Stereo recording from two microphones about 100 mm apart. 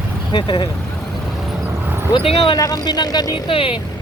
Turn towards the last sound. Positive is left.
turn(degrees=65)  # may be behind; listen again after turning